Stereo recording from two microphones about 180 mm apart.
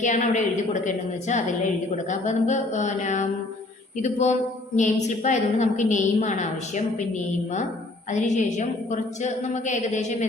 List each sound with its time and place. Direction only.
0.0 s a woman's voice: 45° left (ahead or behind)
8.1 s a woman's voice: 40° left (ahead or behind)